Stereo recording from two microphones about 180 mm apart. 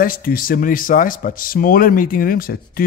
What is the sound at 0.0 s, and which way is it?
Speech, 55° left (ahead or behind).